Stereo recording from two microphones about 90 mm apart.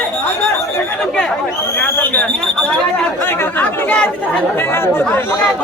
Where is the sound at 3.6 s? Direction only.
20° left (ahead or behind).